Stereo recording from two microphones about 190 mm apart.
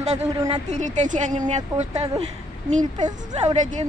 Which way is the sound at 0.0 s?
35° right (ahead or behind).